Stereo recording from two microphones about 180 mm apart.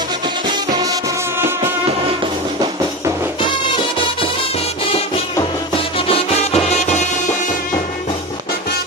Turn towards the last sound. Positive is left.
turn(degrees=40)  # may be behind; listen again after turning